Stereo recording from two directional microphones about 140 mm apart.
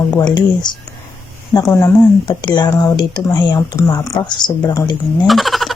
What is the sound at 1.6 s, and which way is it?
Speech, 20° left (ahead or behind).